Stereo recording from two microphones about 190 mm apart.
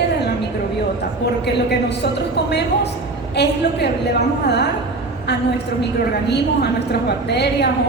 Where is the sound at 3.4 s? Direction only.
60° left (ahead or behind).